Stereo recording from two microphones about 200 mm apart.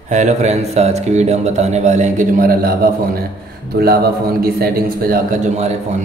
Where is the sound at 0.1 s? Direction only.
35° right (ahead or behind).